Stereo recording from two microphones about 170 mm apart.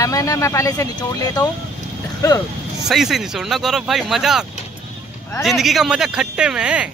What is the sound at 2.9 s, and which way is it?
Speech, centre (ahead or behind).